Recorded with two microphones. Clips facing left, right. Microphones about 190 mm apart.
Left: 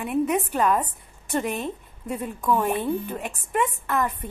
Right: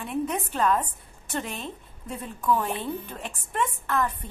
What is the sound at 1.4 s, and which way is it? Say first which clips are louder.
Speech: left 7 dB; 50° left (ahead or behind).